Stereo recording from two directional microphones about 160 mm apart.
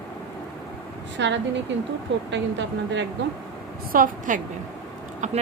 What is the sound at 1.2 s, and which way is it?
Speech, 90° right.